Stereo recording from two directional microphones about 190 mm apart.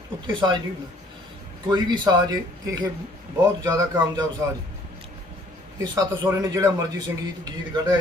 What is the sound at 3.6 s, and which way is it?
Speech, 15° right (ahead or behind).